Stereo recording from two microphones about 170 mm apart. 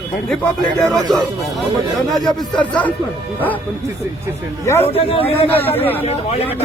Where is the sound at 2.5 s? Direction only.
10° left (ahead or behind).